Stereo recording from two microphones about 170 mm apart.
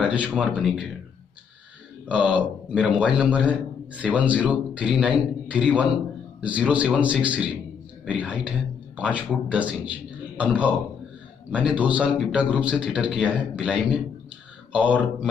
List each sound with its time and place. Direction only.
0.0 s a man's voice: 5° right (ahead or behind)
2.0 s a man's voice: 5° right (ahead or behind)